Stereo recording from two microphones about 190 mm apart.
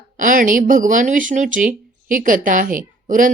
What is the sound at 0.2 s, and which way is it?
Speech, 45° right (ahead or behind).